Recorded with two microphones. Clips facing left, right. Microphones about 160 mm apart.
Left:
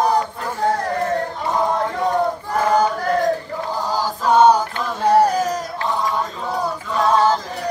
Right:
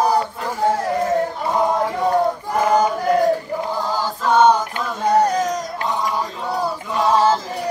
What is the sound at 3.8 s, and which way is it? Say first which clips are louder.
Choir: even; 10° left (ahead or behind).